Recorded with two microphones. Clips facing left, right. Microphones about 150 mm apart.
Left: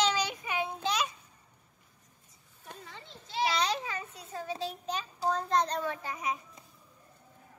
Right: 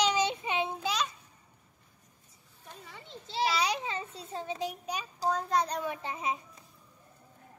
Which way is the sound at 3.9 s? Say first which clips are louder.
Right 2 dB; 25° right (ahead or behind).